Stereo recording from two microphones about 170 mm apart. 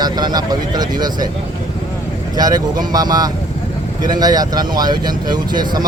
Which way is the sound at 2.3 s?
25° right (ahead or behind).